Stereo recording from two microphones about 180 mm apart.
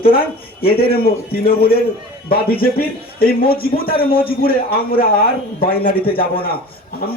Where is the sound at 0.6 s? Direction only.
55° left (ahead or behind).